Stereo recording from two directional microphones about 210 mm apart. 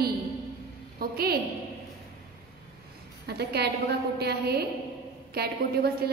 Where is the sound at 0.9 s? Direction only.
45° right (ahead or behind).